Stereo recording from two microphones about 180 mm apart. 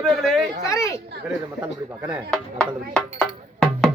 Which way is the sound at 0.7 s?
15° left (ahead or behind).